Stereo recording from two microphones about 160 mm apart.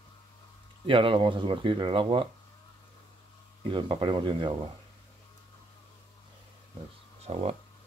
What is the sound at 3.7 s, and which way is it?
Speech, 30° right (ahead or behind).